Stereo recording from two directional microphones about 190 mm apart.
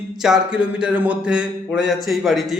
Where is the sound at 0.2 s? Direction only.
5° right (ahead or behind).